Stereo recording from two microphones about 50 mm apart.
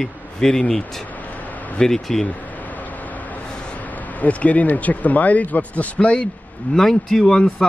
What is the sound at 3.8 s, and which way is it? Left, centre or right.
Speech, left.